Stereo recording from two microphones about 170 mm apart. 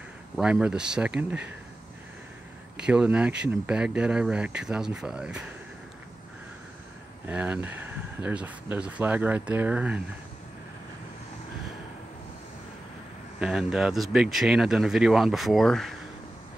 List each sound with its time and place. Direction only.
0.4 s speech: 5° right (ahead or behind)
2.8 s speech: 5° right (ahead or behind)
7.2 s speech: 10° right (ahead or behind)
13.4 s speech: 5° right (ahead or behind)